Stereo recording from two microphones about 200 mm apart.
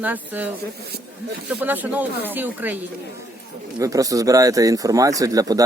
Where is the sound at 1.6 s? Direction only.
10° right (ahead or behind).